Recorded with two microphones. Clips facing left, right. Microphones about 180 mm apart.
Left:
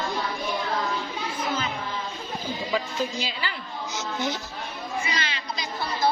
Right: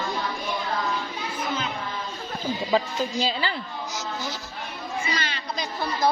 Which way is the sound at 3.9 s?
20° left (ahead or behind).